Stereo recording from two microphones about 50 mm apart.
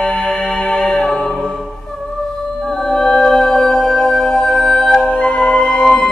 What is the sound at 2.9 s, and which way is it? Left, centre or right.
Music, centre.